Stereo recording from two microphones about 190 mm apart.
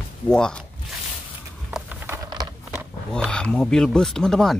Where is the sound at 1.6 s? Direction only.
10° right (ahead or behind).